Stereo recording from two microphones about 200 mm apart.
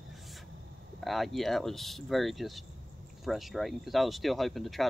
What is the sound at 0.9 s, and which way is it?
Speech, centre (ahead or behind).